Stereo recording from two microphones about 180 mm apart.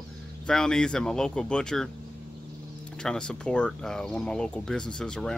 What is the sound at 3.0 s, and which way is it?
Speech, 5° left (ahead or behind).